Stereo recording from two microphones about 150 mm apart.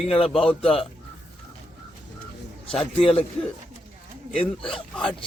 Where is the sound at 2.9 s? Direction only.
40° left (ahead or behind).